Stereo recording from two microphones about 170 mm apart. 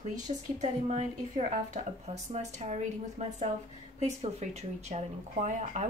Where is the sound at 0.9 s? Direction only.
45° right (ahead or behind).